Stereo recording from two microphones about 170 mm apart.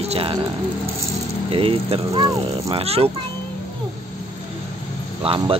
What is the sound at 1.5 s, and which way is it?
Speech, 35° right (ahead or behind).